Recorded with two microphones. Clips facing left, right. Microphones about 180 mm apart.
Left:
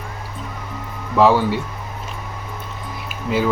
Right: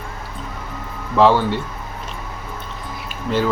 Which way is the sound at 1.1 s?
5° left (ahead or behind).